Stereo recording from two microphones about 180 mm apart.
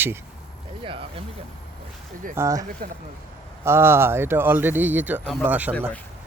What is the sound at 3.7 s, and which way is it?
Speech, 15° right (ahead or behind).